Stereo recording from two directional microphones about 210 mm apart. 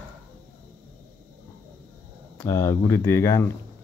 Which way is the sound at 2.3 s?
10° left (ahead or behind).